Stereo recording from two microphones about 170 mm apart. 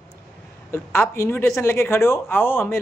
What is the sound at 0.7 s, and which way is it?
A man's voice, 15° left (ahead or behind).